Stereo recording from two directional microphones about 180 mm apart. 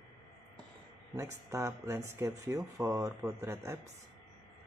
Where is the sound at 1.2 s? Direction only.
15° right (ahead or behind).